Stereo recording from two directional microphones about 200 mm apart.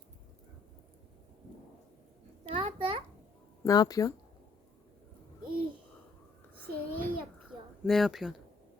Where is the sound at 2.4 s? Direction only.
25° right (ahead or behind).